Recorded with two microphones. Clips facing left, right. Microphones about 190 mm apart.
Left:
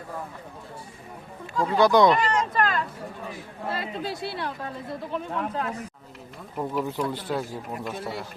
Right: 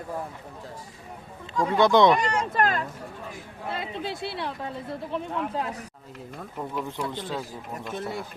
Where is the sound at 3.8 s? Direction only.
25° right (ahead or behind).